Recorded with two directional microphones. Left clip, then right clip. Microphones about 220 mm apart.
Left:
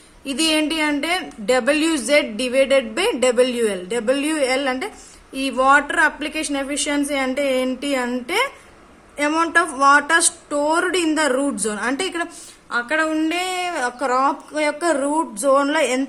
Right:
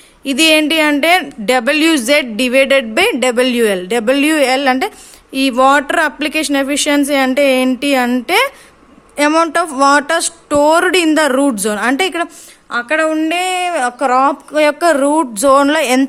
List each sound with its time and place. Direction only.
0.3 s a woman's voice: 35° right (ahead or behind)